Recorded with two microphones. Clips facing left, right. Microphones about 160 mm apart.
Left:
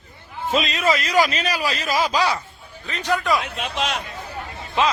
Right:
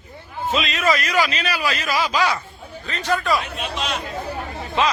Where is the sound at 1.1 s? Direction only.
40° left (ahead or behind).